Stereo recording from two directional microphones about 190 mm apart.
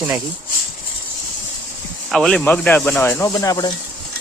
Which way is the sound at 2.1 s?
Centre (ahead or behind).